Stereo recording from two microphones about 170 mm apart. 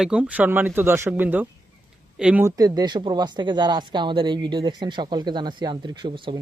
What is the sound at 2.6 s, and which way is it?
Speech, 20° right (ahead or behind).